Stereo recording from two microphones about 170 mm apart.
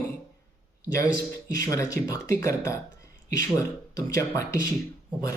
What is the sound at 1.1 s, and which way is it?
Speech, 20° left (ahead or behind).